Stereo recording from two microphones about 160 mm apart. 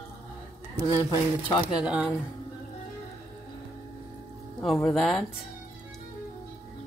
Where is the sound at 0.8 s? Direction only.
25° left (ahead or behind).